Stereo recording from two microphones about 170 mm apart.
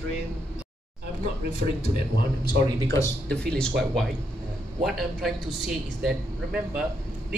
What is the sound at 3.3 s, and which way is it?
Speech, 5° left (ahead or behind).